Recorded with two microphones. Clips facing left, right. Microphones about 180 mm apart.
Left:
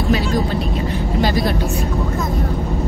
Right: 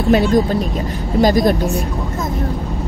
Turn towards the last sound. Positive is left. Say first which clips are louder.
# right 5 dB
turn(degrees=-45)  # may be behind; listen again after turning